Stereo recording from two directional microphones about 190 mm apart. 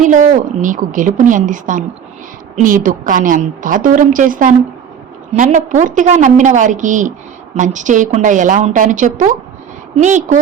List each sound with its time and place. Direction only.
0.0 s a woman's voice: 40° right (ahead or behind)